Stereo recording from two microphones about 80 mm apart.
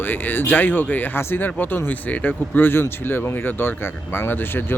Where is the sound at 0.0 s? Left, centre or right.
Left.